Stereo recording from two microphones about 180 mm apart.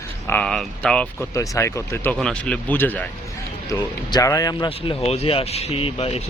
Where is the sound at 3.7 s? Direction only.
20° left (ahead or behind).